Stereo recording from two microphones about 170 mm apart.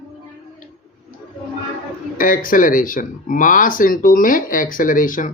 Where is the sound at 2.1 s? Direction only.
55° left (ahead or behind).